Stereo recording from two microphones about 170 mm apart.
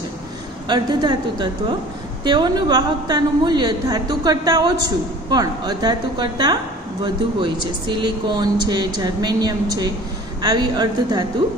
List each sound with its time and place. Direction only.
0.7 s a woman's voice: 25° right (ahead or behind)